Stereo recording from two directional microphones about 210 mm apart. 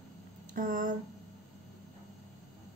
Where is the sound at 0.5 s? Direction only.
40° right (ahead or behind).